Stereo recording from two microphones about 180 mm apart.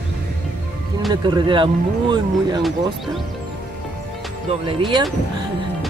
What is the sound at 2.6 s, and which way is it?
Speech, centre (ahead or behind).